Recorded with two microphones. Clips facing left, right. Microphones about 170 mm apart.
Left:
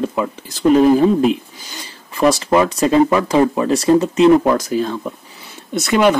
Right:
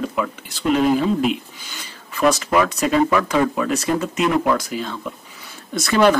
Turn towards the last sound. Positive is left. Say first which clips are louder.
# left 2 dB
turn(degrees=20)  # may be behind; listen again after turning